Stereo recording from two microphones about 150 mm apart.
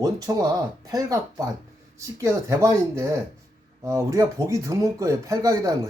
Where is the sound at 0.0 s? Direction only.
25° right (ahead or behind).